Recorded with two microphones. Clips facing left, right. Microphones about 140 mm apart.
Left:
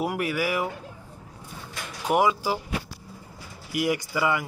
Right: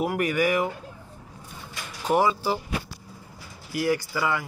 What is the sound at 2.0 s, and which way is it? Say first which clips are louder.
Speech: even; 10° left (ahead or behind).